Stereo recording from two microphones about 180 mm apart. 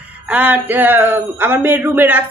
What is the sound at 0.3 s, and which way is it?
A woman's voice, 10° right (ahead or behind).